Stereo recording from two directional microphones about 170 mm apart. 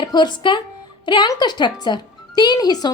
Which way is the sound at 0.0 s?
25° left (ahead or behind).